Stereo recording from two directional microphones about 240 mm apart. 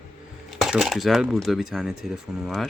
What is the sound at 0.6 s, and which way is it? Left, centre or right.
Speech, centre.